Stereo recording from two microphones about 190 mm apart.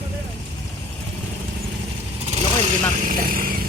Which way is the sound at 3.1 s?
45° right (ahead or behind).